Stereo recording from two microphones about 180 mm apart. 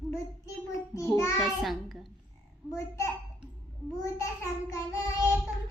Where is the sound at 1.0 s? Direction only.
15° left (ahead or behind).